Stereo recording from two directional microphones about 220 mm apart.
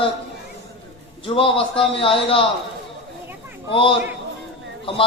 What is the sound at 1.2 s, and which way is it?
A man's voice, 25° left (ahead or behind).